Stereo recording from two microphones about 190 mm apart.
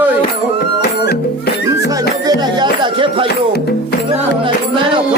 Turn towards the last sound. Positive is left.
turn(degrees=-25)  # may be behind; listen again after turning